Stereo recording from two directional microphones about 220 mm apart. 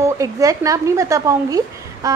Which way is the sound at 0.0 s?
15° right (ahead or behind).